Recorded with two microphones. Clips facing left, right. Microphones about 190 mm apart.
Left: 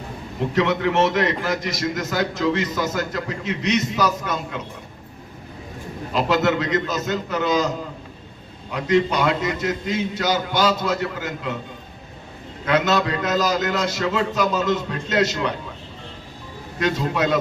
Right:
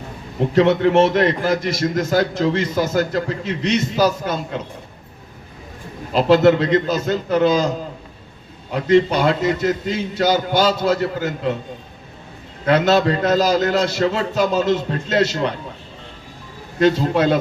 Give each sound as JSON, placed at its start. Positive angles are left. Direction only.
{"t": 0.5, "sound": "a man's voice", "side_deg": -30}
{"t": 6.1, "sound": "a man's voice", "side_deg": -30}
{"t": 8.7, "sound": "a man's voice", "side_deg": -30}
{"t": 12.6, "sound": "a man's voice", "side_deg": -30}
{"t": 16.8, "sound": "a man's voice", "side_deg": -30}